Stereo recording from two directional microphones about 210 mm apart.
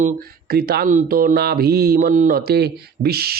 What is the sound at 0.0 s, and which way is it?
Speech, 45° right (ahead or behind).